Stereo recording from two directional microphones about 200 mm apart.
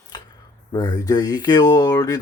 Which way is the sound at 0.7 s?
20° left (ahead or behind).